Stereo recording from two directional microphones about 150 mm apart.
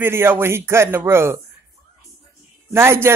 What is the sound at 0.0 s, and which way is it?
Speech, 15° right (ahead or behind).